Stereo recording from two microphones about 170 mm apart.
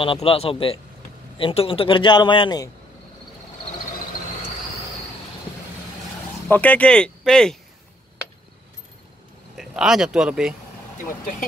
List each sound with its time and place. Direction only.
0.0 s a man's voice: 35° left (ahead or behind)
6.5 s speech: 10° left (ahead or behind)
9.6 s speech: centre (ahead or behind)
11.1 s speech: 55° left (ahead or behind)